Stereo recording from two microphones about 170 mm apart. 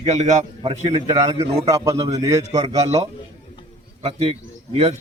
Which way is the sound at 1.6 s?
20° right (ahead or behind).